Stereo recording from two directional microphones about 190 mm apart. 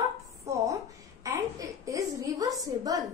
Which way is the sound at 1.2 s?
15° right (ahead or behind).